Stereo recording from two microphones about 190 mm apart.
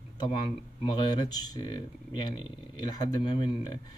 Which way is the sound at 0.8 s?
20° left (ahead or behind).